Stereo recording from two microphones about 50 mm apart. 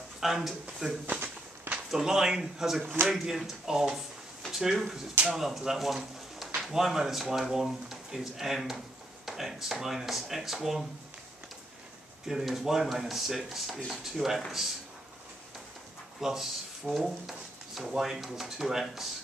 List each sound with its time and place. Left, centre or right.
0.2 s speech: centre
1.0 s walk: right
1.9 s speech: centre
12.3 s speech: centre
16.2 s speech: centre